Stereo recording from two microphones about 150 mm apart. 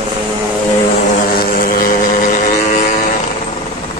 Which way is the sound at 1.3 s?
75° left (ahead or behind).